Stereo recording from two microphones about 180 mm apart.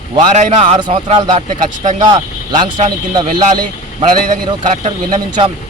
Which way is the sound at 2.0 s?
20° right (ahead or behind).